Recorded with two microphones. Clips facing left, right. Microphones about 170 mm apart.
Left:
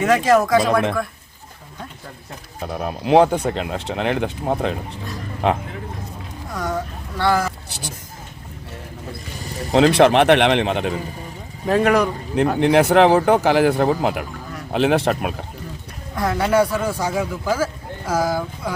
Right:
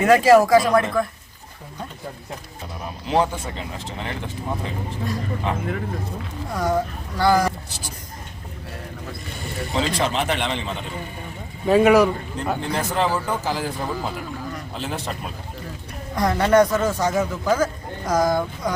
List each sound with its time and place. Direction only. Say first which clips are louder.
0.0 s speech: right 2 dB; centre (ahead or behind)
0.7 s speech: left 1 dB; 90° left
2.6 s speech: left 10 dB; 65° left (ahead or behind)
6.5 s speech: right 3 dB; centre (ahead or behind)
9.7 s speech: left 10 dB; 70° left (ahead or behind)
11.6 s speech: right 2 dB; centre (ahead or behind)
12.5 s speech: left 12 dB; 70° left (ahead or behind)
16.1 s a man's voice: right 1 dB; centre (ahead or behind)